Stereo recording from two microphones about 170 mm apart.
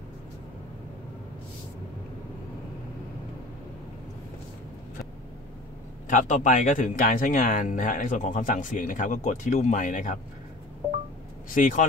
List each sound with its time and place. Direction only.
6.0 s speech: 45° left (ahead or behind)
11.5 s speech: 50° left (ahead or behind)